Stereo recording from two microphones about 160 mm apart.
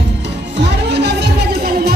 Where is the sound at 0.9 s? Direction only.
90° right.